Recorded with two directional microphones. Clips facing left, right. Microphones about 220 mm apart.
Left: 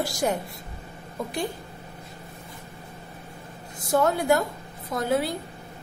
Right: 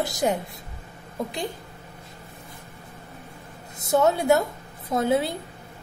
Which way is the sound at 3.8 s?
25° right (ahead or behind).